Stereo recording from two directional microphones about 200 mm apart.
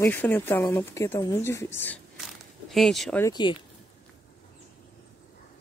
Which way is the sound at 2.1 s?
Centre (ahead or behind).